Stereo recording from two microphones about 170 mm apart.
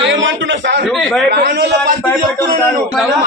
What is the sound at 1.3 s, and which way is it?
Speech, 75° right (ahead or behind).